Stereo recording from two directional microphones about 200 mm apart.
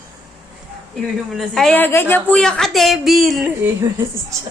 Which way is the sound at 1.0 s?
Centre (ahead or behind).